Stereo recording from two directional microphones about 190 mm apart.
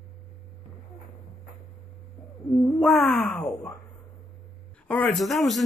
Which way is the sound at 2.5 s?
5° left (ahead or behind).